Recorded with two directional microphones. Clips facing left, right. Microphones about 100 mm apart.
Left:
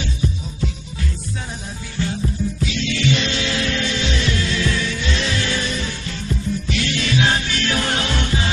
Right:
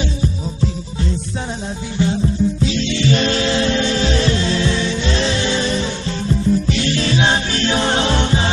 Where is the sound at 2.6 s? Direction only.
35° right (ahead or behind).